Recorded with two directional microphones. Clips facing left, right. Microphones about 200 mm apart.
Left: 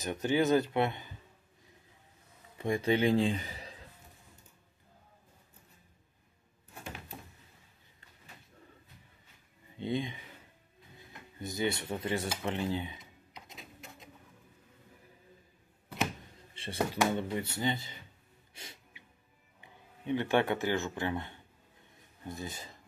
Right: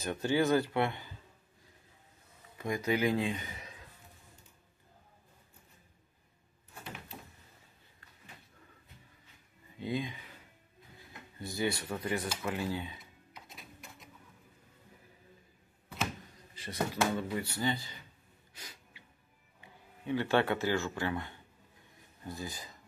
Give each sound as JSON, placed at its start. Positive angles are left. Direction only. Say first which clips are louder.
{"t": 0.0, "sound": "speech", "louder": "left 1 dB", "side_deg": 15}
{"t": 2.5, "sound": "a man's voice", "louder": "left 3 dB", "side_deg": 30}
{"t": 9.8, "sound": "speech", "louder": "left 2 dB", "side_deg": 25}
{"t": 11.0, "sound": "typewriter", "louder": "left 2 dB", "side_deg": 20}
{"t": 13.7, "sound": "a sound", "louder": "left 2 dB", "side_deg": 25}
{"t": 16.6, "sound": "a sound", "louder": "left 2 dB", "side_deg": 30}
{"t": 17.0, "sound": "speech", "louder": "left 1 dB", "side_deg": 25}
{"t": 18.5, "sound": "snort", "louder": "left 1 dB", "side_deg": 25}
{"t": 19.6, "sound": "speech", "louder": "left 1 dB", "side_deg": 20}